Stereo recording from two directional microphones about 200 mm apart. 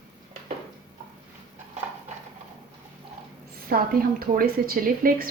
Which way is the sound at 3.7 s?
50° right (ahead or behind).